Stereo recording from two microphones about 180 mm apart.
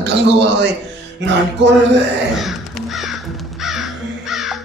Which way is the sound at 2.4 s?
Centre (ahead or behind).